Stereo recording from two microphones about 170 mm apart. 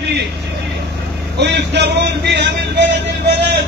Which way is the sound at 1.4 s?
85° right.